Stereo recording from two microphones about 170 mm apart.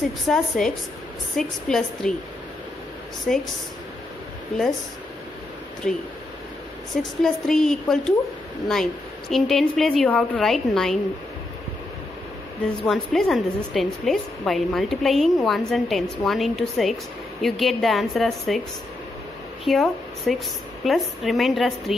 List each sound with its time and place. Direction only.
0.3 s a woman's voice: 5° left (ahead or behind)
3.3 s a woman's voice: centre (ahead or behind)
5.8 s a woman's voice: centre (ahead or behind)
9.3 s a woman's voice: centre (ahead or behind)
12.8 s a woman's voice: centre (ahead or behind)
19.6 s a woman's voice: centre (ahead or behind)